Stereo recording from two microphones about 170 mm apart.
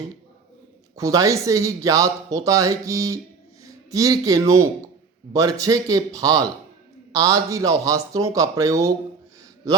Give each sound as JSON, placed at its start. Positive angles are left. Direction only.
{"t": 0.9, "sound": "speech", "side_deg": -20}